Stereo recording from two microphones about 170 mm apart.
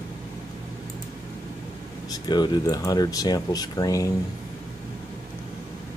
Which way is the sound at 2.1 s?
25° left (ahead or behind).